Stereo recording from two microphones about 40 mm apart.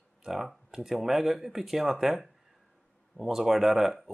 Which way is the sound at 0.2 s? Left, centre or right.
Centre.